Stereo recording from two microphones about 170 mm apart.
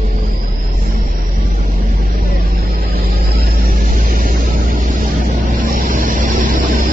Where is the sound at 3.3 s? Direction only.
60° right (ahead or behind).